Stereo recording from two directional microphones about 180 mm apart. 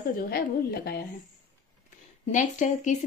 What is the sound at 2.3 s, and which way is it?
Speech, 45° left (ahead or behind).